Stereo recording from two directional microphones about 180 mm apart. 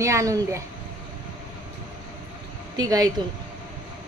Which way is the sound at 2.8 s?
20° right (ahead or behind).